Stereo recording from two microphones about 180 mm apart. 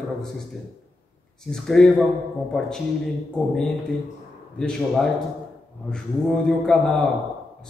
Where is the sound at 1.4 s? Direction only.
5° left (ahead or behind).